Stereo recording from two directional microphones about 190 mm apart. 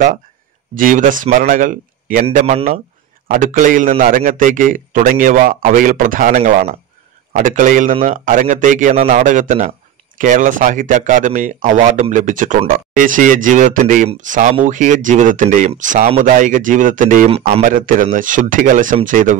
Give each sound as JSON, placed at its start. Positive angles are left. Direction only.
{"t": 0.7, "sound": "a man's voice", "side_deg": -45}